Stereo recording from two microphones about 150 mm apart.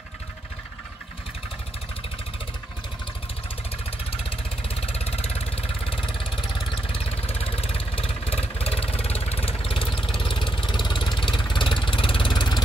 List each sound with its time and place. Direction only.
4.2 s vehicle: 40° left (ahead or behind)
9.9 s vehicle: 5° left (ahead or behind)
10.2 s vehicle: 35° left (ahead or behind)